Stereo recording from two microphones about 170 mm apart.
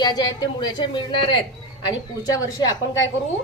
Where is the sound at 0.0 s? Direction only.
25° left (ahead or behind).